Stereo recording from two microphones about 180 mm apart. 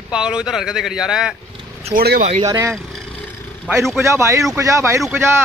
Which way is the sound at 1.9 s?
55° right (ahead or behind).